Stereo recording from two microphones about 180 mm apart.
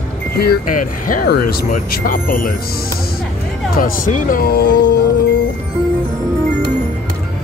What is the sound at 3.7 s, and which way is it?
Speech, 50° left (ahead or behind).